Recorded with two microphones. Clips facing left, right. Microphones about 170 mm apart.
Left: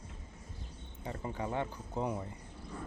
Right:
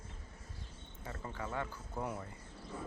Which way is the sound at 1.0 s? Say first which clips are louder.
Left 5 dB; 20° left (ahead or behind).